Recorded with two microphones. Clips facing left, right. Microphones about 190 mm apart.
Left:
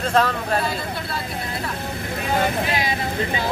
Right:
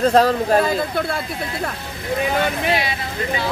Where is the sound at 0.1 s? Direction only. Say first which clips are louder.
Right 5 dB; 40° right (ahead or behind).